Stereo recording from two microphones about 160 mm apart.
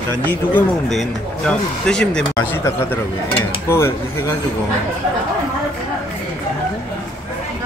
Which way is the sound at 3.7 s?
15° left (ahead or behind).